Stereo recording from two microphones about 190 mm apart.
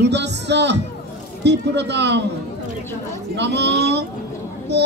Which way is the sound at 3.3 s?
65° right (ahead or behind).